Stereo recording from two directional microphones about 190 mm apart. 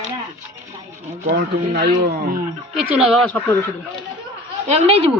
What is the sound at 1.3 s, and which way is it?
Speech, 55° right (ahead or behind).